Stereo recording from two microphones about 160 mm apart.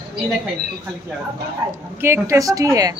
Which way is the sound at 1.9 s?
15° right (ahead or behind).